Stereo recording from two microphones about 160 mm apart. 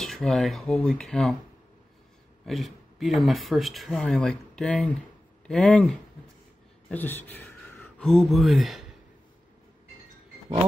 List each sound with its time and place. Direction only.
0.0 s speech: centre (ahead or behind)
2.4 s speech: centre (ahead or behind)
6.9 s a sound: 10° left (ahead or behind)
8.1 s speech: centre (ahead or behind)